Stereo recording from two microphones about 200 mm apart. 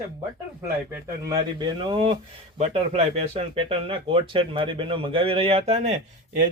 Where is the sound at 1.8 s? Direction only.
25° right (ahead or behind).